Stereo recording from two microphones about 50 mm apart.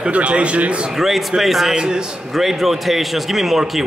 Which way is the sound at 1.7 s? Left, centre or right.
Centre.